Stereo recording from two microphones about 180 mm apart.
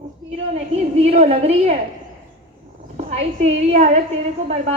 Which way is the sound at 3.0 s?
40° right (ahead or behind).